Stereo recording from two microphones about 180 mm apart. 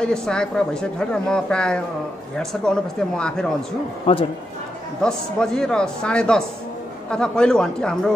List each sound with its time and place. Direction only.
0.0 s speech: 5° left (ahead or behind)
4.0 s speech: 30° left (ahead or behind)
5.0 s speech: 5° left (ahead or behind)